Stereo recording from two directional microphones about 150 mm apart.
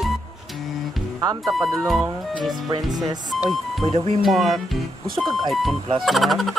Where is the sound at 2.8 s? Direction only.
25° right (ahead or behind).